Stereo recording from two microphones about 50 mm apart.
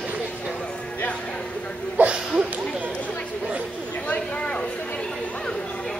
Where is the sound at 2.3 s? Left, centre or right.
Right.